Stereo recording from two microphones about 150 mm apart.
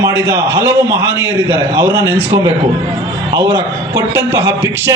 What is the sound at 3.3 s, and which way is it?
A man's voice, 20° right (ahead or behind).